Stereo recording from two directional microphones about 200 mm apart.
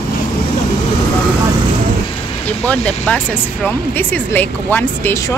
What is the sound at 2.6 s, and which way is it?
Speech, 5° left (ahead or behind).